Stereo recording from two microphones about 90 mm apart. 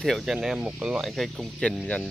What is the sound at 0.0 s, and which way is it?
Speech, centre (ahead or behind).